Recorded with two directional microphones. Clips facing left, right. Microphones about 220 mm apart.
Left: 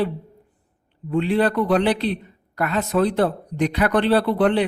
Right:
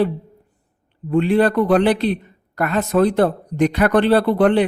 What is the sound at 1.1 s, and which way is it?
Speech, 45° right (ahead or behind).